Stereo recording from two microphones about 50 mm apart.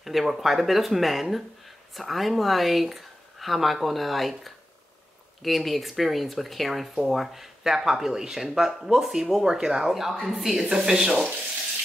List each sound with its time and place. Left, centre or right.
0.0 s speech: centre
9.9 s speech: centre